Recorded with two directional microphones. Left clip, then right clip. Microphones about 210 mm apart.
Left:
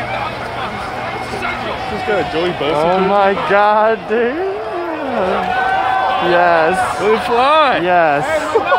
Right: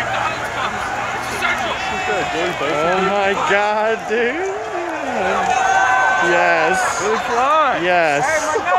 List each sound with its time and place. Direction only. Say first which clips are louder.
3.2 s speech: left 4 dB; 5° left (ahead or behind)
6.3 s speech: left 3 dB; 5° left (ahead or behind)
7.4 s a sound: left 3 dB; 55° left (ahead or behind)
7.8 s speech: left 3 dB; centre (ahead or behind)